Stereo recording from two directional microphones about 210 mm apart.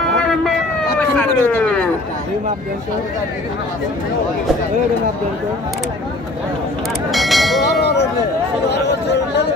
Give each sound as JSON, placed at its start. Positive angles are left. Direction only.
{"t": 0.9, "sound": "a sound", "side_deg": 5}
{"t": 7.1, "sound": "speech", "side_deg": 0}
{"t": 8.6, "sound": "speech", "side_deg": 55}